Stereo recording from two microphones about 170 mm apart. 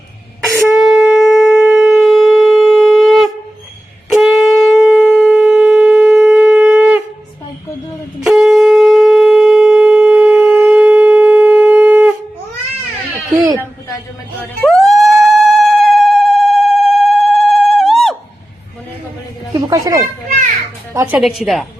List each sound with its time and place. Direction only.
0.5 s shofar: centre (ahead or behind)
8.2 s shofar: centre (ahead or behind)
13.3 s a sound: 20° right (ahead or behind)
14.6 s police car: centre (ahead or behind)
19.5 s a sound: 20° right (ahead or behind)
20.9 s music: 15° right (ahead or behind)
21.2 s a woman's voice: centre (ahead or behind)